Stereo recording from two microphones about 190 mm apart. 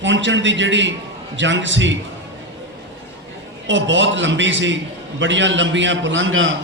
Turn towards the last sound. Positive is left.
turn(degrees=-90)